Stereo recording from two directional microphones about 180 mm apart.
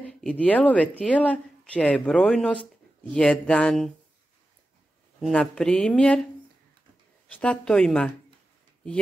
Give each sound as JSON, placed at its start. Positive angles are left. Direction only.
{"t": 0.0, "sound": "speech", "side_deg": 5}
{"t": 5.2, "sound": "speech", "side_deg": 5}
{"t": 7.2, "sound": "speech", "side_deg": 5}